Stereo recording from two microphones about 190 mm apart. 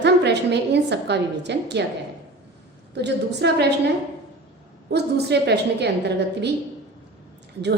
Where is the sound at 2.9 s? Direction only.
65° right (ahead or behind).